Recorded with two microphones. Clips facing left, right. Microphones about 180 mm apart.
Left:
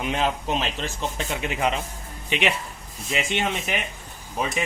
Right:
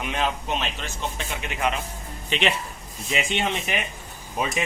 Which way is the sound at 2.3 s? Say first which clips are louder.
Even; 10° left (ahead or behind).